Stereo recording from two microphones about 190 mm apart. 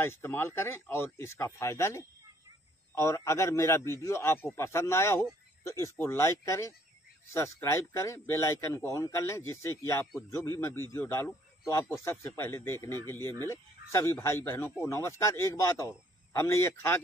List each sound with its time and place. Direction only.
0.0 s speech: 10° left (ahead or behind)